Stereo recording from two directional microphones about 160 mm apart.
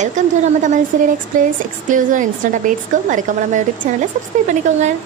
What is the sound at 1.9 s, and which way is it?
A woman's voice, 55° right (ahead or behind).